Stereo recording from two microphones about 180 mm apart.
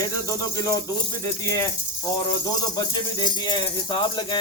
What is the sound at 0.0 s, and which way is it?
Speech, 20° left (ahead or behind).